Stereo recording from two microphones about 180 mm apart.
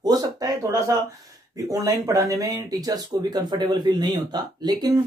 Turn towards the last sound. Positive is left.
turn(degrees=-20)  # may be behind; listen again after turning